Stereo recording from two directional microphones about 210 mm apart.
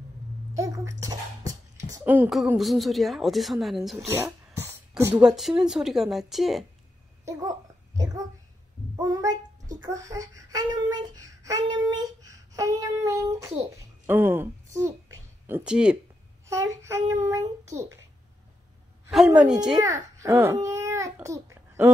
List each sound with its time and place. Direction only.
0.6 s a sound: 15° right (ahead or behind)
1.0 s speech: 15° right (ahead or behind)
4.1 s speech: 10° right (ahead or behind)
7.2 s a child's voice: 15° right (ahead or behind)
16.4 s a child's voice: 15° right (ahead or behind)
19.0 s speech: 5° right (ahead or behind)
19.8 s a child's voice: 15° right (ahead or behind)